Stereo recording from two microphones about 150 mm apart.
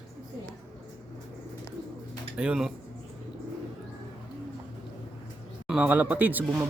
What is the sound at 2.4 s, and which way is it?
Speech, 5° right (ahead or behind).